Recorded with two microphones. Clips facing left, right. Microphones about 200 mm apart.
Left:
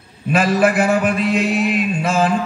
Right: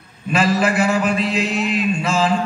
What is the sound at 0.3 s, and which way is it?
A man's voice, 55° left (ahead or behind).